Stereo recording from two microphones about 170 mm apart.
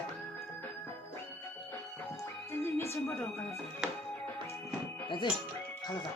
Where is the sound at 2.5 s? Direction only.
15° left (ahead or behind).